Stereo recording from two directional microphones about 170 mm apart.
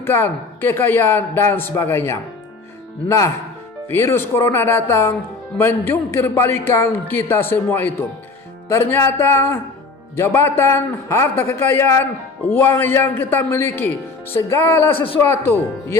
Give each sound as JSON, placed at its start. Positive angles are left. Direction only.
{"t": 0.0, "sound": "speech", "side_deg": 15}